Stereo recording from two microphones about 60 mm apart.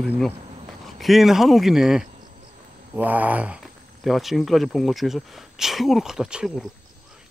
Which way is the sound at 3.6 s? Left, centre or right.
Centre.